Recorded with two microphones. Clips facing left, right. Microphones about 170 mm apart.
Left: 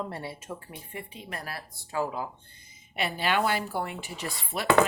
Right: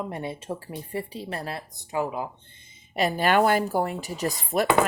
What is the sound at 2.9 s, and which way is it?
Speech, 40° right (ahead or behind).